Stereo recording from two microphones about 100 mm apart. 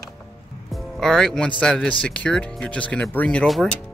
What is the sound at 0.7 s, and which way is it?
Music, 5° left (ahead or behind).